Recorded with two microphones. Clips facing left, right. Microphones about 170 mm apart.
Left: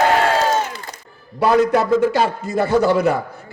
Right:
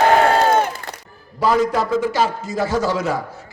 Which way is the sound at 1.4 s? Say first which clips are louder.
Left 3 dB; 60° left (ahead or behind).